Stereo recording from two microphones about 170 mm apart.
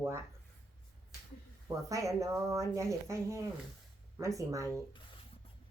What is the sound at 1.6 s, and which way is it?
A woman's voice, 20° right (ahead or behind).